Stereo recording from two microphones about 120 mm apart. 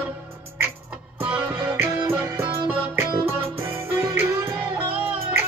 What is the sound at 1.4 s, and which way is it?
Music, 25° right (ahead or behind).